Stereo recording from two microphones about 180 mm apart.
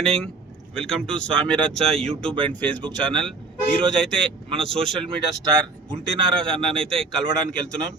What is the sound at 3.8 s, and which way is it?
Speech, 25° right (ahead or behind).